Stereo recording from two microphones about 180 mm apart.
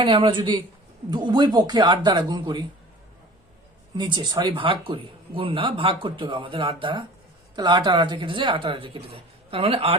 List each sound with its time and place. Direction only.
0.0 s speech: 25° right (ahead or behind)
3.9 s speech: 25° right (ahead or behind)